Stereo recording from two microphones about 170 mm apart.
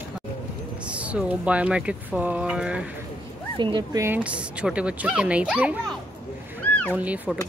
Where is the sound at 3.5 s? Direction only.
30° right (ahead or behind).